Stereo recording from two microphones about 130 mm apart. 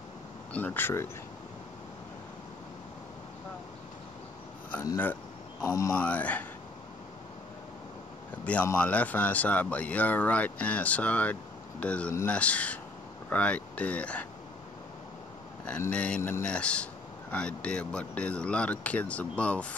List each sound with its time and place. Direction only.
0.5 s speech: 10° left (ahead or behind)
5.6 s speech: 25° left (ahead or behind)
5.9 s speech: 10° left (ahead or behind)
8.7 s speech: 10° left (ahead or behind)
15.9 s speech: 10° left (ahead or behind)
16.2 s speech: 20° left (ahead or behind)
16.4 s speech: 10° left (ahead or behind)